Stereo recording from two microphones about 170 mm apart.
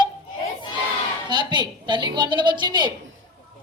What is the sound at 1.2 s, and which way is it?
A woman's voice, 25° right (ahead or behind).